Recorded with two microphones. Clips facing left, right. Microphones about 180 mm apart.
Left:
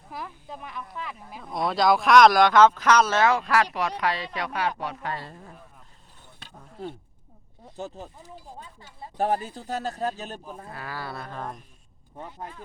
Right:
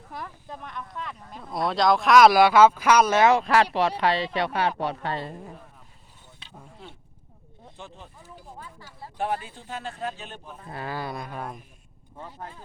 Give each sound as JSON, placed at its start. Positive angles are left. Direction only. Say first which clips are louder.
{"t": 0.1, "sound": "speech", "louder": "left 1 dB", "side_deg": 5}
{"t": 3.3, "sound": "speech", "louder": "right 3 dB", "side_deg": -25}
{"t": 7.8, "sound": "speech", "louder": "left 8 dB", "side_deg": 40}
{"t": 8.5, "sound": "speech", "louder": "right 1 dB", "side_deg": 25}
{"t": 9.1, "sound": "speech", "louder": "left 4 dB", "side_deg": 40}
{"t": 10.7, "sound": "speech", "louder": "right 5 dB", "side_deg": -25}
{"t": 12.1, "sound": "speech", "louder": "left 1 dB", "side_deg": 15}